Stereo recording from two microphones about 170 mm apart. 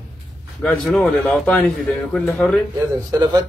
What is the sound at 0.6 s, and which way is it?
Speech, 5° left (ahead or behind).